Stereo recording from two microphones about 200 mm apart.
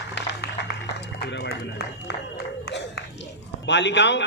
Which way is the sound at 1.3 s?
60° left (ahead or behind).